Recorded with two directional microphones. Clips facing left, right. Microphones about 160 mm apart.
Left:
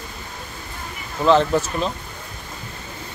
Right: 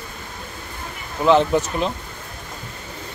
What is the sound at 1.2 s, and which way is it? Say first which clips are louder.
Speech: even; 15° right (ahead or behind).